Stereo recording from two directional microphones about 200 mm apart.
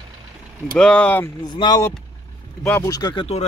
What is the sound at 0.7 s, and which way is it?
Speech, 5° left (ahead or behind).